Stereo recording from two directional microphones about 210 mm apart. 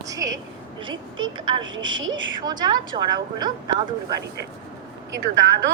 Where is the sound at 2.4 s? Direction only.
20° right (ahead or behind).